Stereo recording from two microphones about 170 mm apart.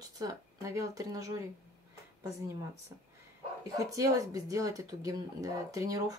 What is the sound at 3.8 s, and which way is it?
Speech, 20° right (ahead or behind).